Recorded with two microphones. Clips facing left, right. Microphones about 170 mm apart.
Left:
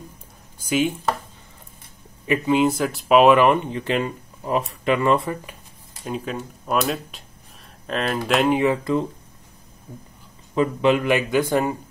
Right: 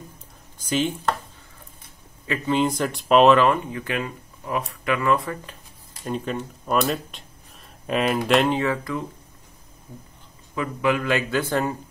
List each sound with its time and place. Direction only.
0.6 s speech: 10° left (ahead or behind)
2.2 s speech: 15° left (ahead or behind)
3.7 s speech: 25° left (ahead or behind)
6.0 s speech: 5° left (ahead or behind)
8.5 s speech: 20° left (ahead or behind)
10.5 s speech: 25° left (ahead or behind)